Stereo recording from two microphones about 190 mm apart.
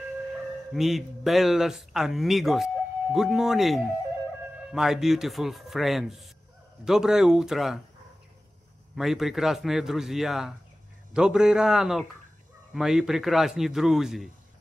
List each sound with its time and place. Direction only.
0.7 s speech: centre (ahead or behind)
8.9 s speech: centre (ahead or behind)